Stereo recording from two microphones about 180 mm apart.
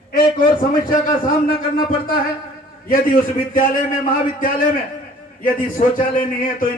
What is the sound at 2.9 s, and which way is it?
Speech, 50° left (ahead or behind).